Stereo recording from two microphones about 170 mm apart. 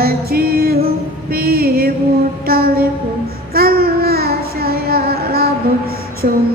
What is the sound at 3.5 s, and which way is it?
Child singing, 60° right (ahead or behind).